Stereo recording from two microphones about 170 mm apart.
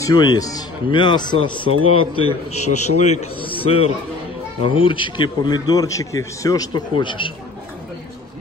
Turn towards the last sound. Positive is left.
turn(degrees=30)  # may be behind; listen again after turning